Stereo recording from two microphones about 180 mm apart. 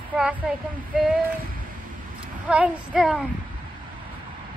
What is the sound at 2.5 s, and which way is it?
Speech, 5° right (ahead or behind).